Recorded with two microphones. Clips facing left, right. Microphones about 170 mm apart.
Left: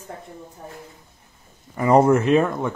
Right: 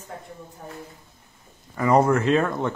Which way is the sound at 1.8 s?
25° left (ahead or behind).